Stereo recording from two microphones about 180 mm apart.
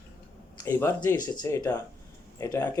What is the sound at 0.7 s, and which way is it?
Speech, 10° left (ahead or behind).